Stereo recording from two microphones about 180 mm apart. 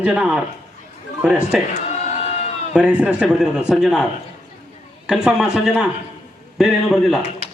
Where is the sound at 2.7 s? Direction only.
5° right (ahead or behind).